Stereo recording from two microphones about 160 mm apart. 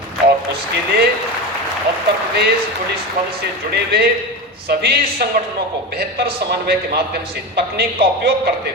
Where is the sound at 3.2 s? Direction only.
65° right (ahead or behind).